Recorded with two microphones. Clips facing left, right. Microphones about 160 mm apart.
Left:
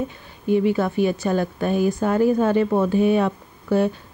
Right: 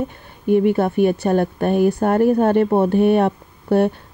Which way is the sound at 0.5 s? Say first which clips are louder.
Right 3 dB; 60° right (ahead or behind).